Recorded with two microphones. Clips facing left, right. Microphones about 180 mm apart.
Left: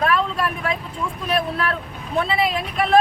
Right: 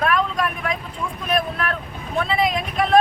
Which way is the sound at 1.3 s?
30° left (ahead or behind).